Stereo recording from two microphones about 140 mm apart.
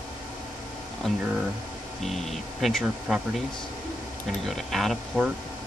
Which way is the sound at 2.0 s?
Centre (ahead or behind).